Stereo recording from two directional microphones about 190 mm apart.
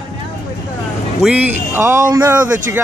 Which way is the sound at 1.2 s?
10° right (ahead or behind).